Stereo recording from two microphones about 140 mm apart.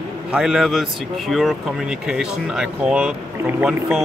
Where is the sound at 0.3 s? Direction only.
Centre (ahead or behind).